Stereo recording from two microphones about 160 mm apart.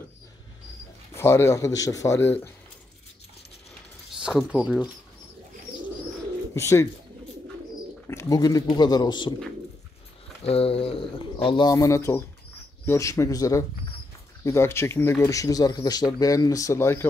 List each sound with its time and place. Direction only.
1.1 s speech: 15° left (ahead or behind)
4.2 s speech: 5° right (ahead or behind)
6.5 s speech: 20° left (ahead or behind)
8.1 s speech: 20° left (ahead or behind)
10.4 s speech: 40° left (ahead or behind); by 17.0 s 15° left (ahead or behind)